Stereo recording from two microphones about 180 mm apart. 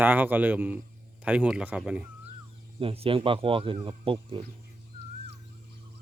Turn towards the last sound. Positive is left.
turn(degrees=-30)  # may be behind; listen again after turning